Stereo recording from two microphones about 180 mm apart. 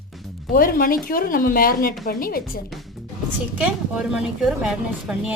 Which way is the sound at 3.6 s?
5° right (ahead or behind).